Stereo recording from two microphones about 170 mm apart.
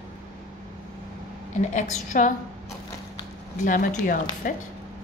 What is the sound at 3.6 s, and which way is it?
Speech, 50° left (ahead or behind).